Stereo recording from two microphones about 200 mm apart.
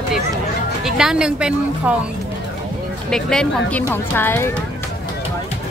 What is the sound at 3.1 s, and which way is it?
Speech, 5° left (ahead or behind).